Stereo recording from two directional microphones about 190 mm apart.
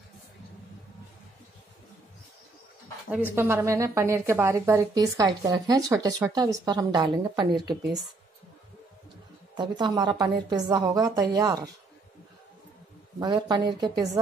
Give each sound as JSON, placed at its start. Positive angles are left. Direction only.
{"t": 3.1, "sound": "a woman's voice", "side_deg": -10}
{"t": 9.6, "sound": "a woman's voice", "side_deg": -20}
{"t": 13.2, "sound": "a woman's voice", "side_deg": -25}